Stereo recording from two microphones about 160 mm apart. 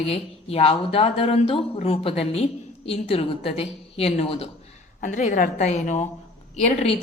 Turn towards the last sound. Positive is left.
turn(degrees=35)  # may be behind; listen again after turning